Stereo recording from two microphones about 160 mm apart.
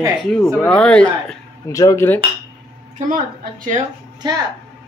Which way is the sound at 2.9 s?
55° right (ahead or behind).